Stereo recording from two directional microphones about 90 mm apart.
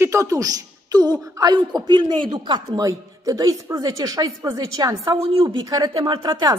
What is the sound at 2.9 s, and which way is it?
A woman's voice, 40° right (ahead or behind).